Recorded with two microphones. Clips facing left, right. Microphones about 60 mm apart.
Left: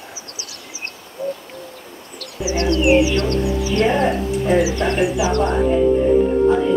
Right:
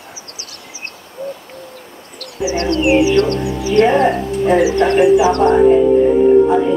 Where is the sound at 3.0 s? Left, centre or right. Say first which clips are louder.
Right 5 dB; right.